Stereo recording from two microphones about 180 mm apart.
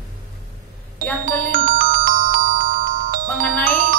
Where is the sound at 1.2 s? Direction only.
50° right (ahead or behind).